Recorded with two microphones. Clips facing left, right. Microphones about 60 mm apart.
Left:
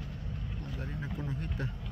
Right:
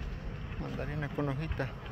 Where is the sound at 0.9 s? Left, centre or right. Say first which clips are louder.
Right 5 dB; right.